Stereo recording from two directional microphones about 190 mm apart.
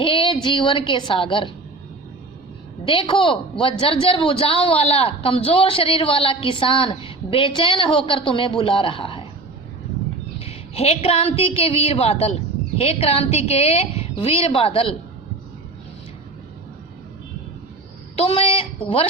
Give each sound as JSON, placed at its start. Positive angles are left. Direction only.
{"t": 0.0, "sound": "a woman's voice", "side_deg": 25}
{"t": 2.8, "sound": "a man's voice", "side_deg": 25}
{"t": 10.4, "sound": "a woman's voice", "side_deg": 30}
{"t": 18.2, "sound": "a man's voice", "side_deg": 30}